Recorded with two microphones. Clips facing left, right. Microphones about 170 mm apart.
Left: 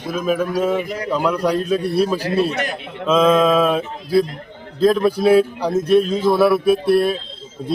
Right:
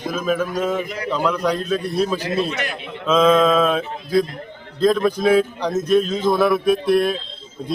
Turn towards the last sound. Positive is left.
turn(degrees=5)  # may be behind; listen again after turning